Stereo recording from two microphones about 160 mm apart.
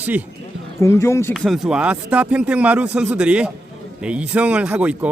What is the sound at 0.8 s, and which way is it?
Speech, 15° left (ahead or behind).